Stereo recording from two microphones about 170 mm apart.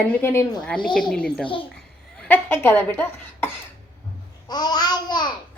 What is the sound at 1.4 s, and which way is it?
Speech, 30° left (ahead or behind).